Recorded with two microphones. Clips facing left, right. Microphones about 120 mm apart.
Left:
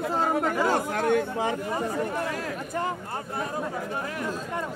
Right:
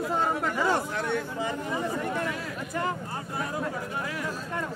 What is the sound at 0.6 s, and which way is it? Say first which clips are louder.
Speech: left 3 dB; 45° left (ahead or behind).